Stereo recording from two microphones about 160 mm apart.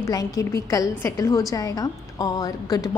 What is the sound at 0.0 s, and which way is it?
A woman's voice, 20° left (ahead or behind).